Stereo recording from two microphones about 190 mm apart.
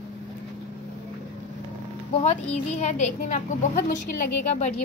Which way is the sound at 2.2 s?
35° left (ahead or behind).